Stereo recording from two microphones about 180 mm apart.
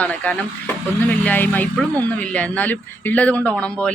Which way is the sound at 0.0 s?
10° left (ahead or behind).